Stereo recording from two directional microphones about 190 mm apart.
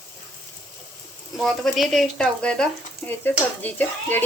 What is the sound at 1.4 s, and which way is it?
Frying, centre (ahead or behind).